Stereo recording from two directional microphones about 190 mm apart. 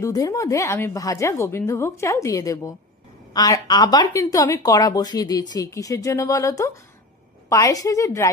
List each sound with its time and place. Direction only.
0.0 s a woman's voice: 20° left (ahead or behind)